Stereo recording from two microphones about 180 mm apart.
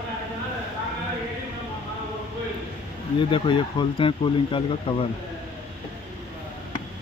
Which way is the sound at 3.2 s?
25° left (ahead or behind).